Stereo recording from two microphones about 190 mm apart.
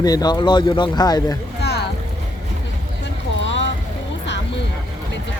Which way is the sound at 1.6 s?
60° left (ahead or behind).